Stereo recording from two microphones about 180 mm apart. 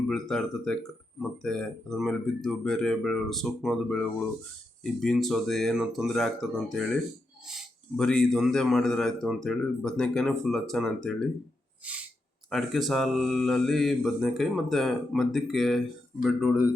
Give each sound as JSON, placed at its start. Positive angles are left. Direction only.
{"t": 0.1, "sound": "speech", "side_deg": 5}
{"t": 12.5, "sound": "speech", "side_deg": 0}